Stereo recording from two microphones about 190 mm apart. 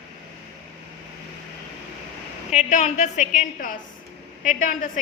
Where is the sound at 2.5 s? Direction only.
35° left (ahead or behind).